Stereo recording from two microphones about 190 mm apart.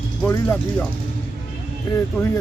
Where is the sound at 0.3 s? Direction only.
10° left (ahead or behind).